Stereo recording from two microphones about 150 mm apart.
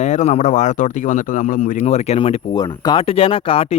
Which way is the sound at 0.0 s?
50° left (ahead or behind).